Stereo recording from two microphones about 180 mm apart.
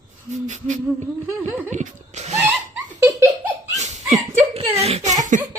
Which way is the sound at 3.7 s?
40° right (ahead or behind).